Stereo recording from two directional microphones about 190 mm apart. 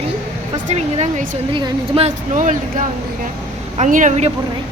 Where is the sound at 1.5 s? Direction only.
30° right (ahead or behind).